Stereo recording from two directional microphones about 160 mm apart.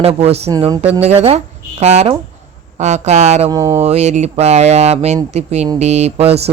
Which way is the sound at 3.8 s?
40° right (ahead or behind).